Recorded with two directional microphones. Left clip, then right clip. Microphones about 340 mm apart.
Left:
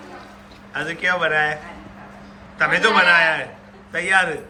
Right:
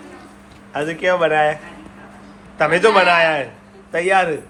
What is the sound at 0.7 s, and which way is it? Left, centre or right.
Speech, centre.